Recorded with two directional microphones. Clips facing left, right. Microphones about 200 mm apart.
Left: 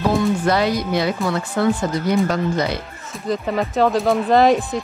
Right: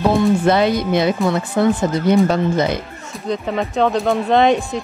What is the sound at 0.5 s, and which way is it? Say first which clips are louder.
Speech: right 3 dB; 25° right (ahead or behind).